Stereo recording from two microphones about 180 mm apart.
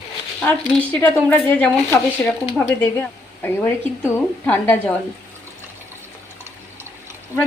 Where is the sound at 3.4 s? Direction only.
10° left (ahead or behind).